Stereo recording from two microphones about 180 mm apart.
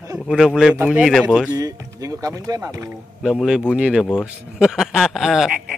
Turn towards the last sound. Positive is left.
turn(degrees=0)  # may be behind; listen again after turning